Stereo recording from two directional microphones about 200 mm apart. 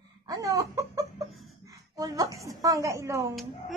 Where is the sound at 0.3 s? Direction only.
15° right (ahead or behind).